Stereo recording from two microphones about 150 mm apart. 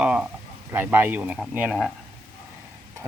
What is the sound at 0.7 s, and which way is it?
Speech, 15° right (ahead or behind).